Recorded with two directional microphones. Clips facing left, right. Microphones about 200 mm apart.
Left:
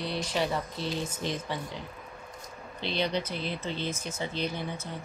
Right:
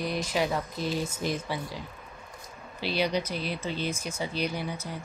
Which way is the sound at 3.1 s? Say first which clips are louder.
Right 2 dB; 20° left (ahead or behind).